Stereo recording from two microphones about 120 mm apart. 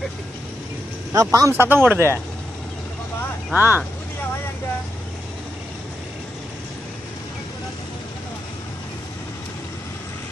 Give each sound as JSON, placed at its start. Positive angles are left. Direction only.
{"t": 1.1, "sound": "speech", "side_deg": -30}
{"t": 1.5, "sound": "speech", "side_deg": -15}
{"t": 3.5, "sound": "speech", "side_deg": -15}